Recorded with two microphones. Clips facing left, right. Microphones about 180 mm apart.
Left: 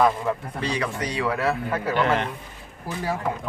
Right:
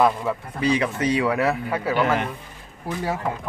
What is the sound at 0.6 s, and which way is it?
Speech, 20° right (ahead or behind).